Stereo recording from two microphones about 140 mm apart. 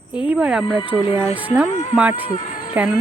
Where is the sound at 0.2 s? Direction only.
10° right (ahead or behind).